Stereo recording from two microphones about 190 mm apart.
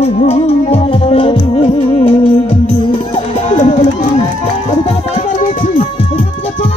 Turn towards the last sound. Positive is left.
turn(degrees=35)  # may be behind; listen again after turning